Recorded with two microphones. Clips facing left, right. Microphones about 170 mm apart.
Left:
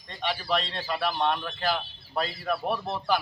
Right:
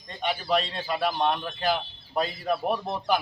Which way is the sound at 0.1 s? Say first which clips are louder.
Right 2 dB; 15° right (ahead or behind).